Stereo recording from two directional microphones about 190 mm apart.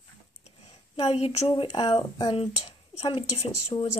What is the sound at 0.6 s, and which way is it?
Speech, 35° left (ahead or behind).